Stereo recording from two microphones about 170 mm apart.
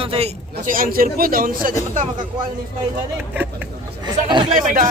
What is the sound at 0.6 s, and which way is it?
A man's voice, 55° right (ahead or behind).